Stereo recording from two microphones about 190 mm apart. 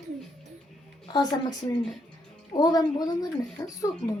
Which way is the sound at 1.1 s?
20° left (ahead or behind).